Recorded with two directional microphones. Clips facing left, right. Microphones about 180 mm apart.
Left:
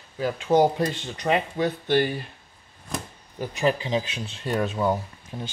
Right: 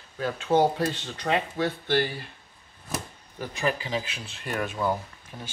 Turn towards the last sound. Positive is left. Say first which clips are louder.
# left 6 dB
turn(degrees=25)  # may be behind; listen again after turning